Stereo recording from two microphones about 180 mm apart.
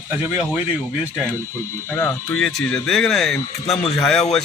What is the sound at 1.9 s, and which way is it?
A man's voice, 10° left (ahead or behind).